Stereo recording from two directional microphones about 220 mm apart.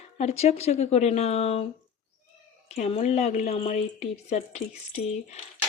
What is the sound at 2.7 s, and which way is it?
Speech, 30° left (ahead or behind).